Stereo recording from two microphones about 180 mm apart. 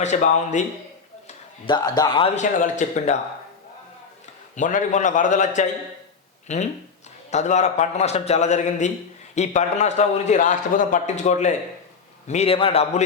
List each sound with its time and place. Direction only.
0.0 s a man's voice: 40° left (ahead or behind)
1.6 s a man's voice: 25° left (ahead or behind)
2.3 s a man's voice: 40° left (ahead or behind)
4.5 s a man's voice: 45° left (ahead or behind)